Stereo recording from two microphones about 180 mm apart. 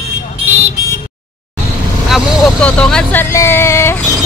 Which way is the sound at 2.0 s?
Centre (ahead or behind).